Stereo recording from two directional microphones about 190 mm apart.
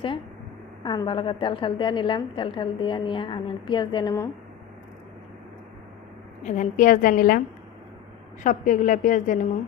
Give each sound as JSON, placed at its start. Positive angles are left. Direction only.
{"t": 0.8, "sound": "a woman's voice", "side_deg": 25}
{"t": 6.4, "sound": "a woman's voice", "side_deg": 40}
{"t": 8.4, "sound": "a woman's voice", "side_deg": 45}